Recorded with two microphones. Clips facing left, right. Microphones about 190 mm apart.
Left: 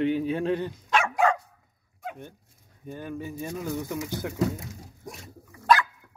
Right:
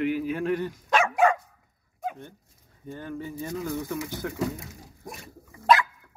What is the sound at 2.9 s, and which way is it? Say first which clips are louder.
Speech: even; 15° left (ahead or behind).